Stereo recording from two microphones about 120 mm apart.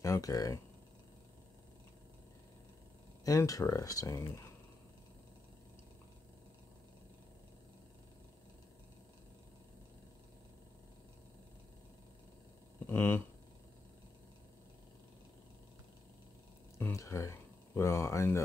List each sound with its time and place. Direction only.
0.0 s speech: 30° left (ahead or behind)
3.3 s speech: 30° left (ahead or behind)
12.9 s speech: 20° left (ahead or behind)
16.9 s speech: 25° left (ahead or behind)